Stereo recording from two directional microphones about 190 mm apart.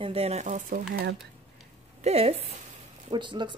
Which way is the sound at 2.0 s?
30° right (ahead or behind).